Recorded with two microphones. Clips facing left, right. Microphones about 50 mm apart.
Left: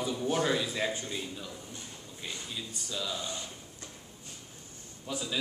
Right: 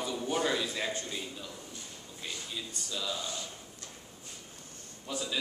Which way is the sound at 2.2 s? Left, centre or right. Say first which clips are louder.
Even; centre.